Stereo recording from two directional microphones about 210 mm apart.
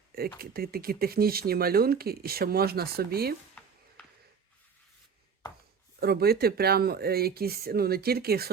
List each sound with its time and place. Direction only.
0.3 s speech: 45° right (ahead or behind)
6.0 s speech: 45° right (ahead or behind)